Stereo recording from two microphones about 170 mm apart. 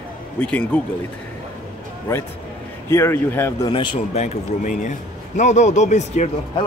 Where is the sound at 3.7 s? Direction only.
30° left (ahead or behind).